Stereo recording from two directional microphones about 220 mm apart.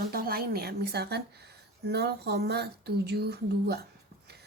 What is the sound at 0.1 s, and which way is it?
A woman's voice, 45° right (ahead or behind).